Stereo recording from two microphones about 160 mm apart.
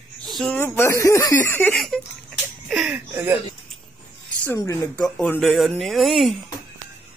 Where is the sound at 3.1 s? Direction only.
10° right (ahead or behind).